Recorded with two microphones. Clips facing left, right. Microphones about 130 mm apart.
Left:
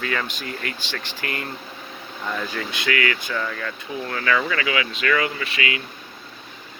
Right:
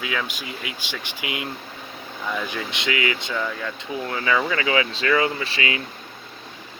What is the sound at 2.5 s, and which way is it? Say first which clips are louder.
Speech: left 1 dB; 20° right (ahead or behind).